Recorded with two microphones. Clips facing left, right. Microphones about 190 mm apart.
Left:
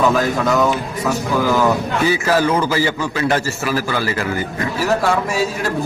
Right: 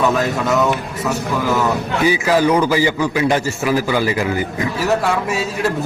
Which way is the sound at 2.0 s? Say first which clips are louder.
Right 2 dB; 15° right (ahead or behind).